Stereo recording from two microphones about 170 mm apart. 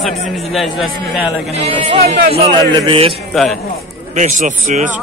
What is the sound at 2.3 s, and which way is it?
Speech, 35° right (ahead or behind).